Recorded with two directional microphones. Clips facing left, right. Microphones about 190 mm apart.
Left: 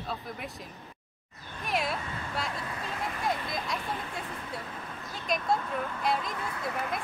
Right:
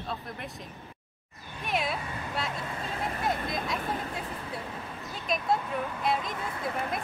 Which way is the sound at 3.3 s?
50° right (ahead or behind).